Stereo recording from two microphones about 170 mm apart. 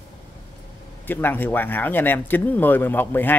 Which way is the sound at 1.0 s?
10° left (ahead or behind).